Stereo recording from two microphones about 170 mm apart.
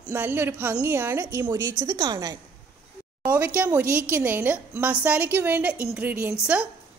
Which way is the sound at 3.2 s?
10° right (ahead or behind).